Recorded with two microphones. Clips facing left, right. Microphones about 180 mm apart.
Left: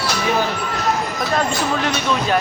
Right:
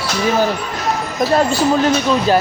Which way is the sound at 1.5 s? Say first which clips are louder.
Right 6 dB; 35° right (ahead or behind).